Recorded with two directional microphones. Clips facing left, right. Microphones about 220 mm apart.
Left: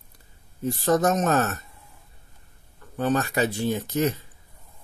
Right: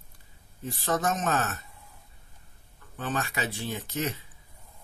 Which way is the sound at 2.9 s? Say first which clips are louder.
Left 9 dB; 40° left (ahead or behind).